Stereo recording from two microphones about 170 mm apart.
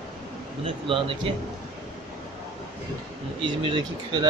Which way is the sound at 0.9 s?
30° right (ahead or behind).